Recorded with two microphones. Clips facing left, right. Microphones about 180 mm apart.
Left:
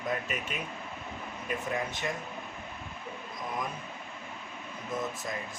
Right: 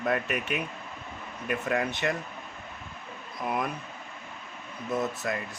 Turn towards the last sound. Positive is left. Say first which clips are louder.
# right 5 dB
turn(degrees=-70)  # may be behind; listen again after turning